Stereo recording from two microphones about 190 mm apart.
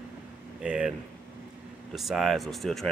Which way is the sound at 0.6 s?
5° right (ahead or behind).